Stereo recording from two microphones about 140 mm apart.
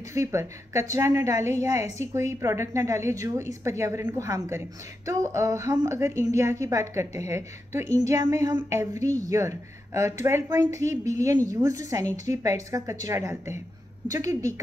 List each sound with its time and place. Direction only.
0.1 s speech: 20° right (ahead or behind)